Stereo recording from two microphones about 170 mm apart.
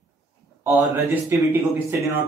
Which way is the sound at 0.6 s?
15° right (ahead or behind).